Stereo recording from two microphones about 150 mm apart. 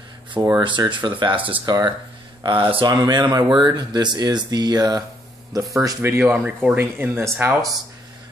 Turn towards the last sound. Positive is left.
turn(degrees=-20)  # may be behind; listen again after turning